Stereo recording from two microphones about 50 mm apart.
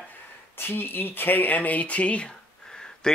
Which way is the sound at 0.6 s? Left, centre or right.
Left.